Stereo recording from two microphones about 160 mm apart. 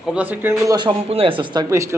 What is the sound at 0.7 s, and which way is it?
Speech, 30° right (ahead or behind).